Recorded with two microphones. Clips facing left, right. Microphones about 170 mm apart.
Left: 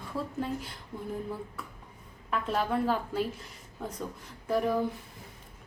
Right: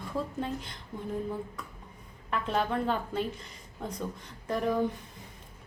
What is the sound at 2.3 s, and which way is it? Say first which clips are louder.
A woman's voice: even; centre (ahead or behind).